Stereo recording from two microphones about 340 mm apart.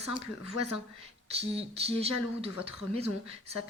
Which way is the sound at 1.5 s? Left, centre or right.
Centre.